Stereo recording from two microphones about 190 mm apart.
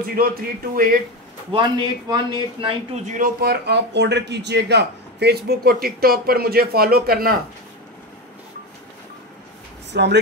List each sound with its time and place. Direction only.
0.1 s speech: 50° right (ahead or behind)
1.5 s speech: 25° right (ahead or behind)
3.1 s speech: 50° right (ahead or behind)
9.9 s speech: 60° right (ahead or behind)